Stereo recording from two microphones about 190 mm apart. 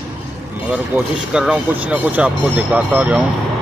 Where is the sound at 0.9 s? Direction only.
10° right (ahead or behind).